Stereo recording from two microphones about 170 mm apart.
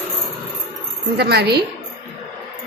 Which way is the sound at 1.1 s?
70° right (ahead or behind).